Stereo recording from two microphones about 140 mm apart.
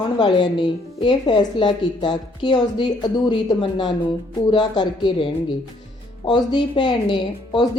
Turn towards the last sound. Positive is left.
turn(degrees=35)  # may be behind; listen again after turning